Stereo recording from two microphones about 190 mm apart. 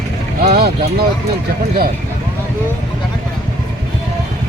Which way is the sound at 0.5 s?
55° right (ahead or behind).